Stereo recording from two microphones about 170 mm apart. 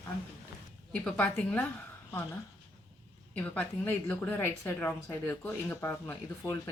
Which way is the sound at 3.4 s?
10° left (ahead or behind).